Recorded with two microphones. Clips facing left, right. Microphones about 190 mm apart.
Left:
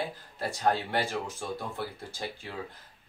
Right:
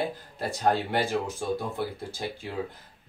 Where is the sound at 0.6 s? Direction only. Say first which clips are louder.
Right 3 dB; 15° right (ahead or behind).